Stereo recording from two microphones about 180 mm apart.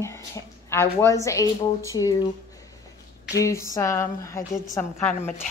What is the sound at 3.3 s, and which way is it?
A woman's voice, 15° left (ahead or behind).